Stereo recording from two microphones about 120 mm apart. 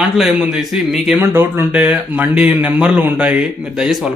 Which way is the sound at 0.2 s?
10° right (ahead or behind).